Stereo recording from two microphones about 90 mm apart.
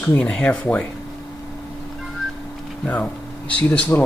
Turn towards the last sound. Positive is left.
turn(degrees=15)  # may be behind; listen again after turning